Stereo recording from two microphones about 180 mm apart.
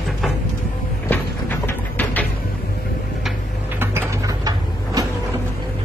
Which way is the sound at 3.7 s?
15° right (ahead or behind).